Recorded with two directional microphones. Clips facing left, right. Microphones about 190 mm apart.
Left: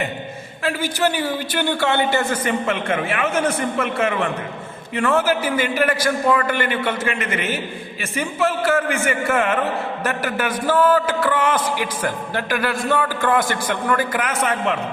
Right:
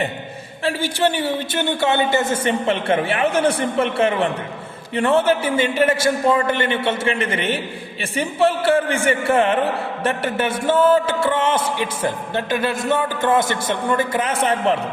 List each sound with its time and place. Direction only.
0.6 s a man's voice: 30° right (ahead or behind)